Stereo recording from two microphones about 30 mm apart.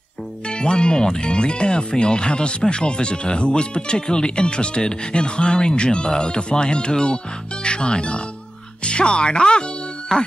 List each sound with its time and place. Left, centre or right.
0.5 s speech: left
10.1 s speech: centre